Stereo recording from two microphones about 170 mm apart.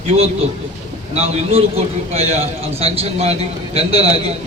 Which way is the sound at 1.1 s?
40° right (ahead or behind).